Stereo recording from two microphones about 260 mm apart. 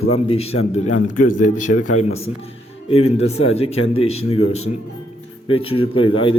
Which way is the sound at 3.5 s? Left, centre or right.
Left.